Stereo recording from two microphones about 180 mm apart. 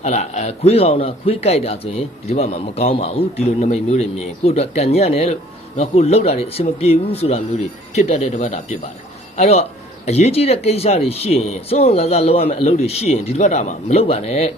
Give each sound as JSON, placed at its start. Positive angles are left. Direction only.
{"t": 0.0, "sound": "a man's voice", "side_deg": 40}